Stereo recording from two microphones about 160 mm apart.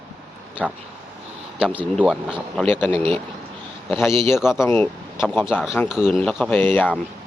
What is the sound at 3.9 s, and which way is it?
Speech, 15° left (ahead or behind).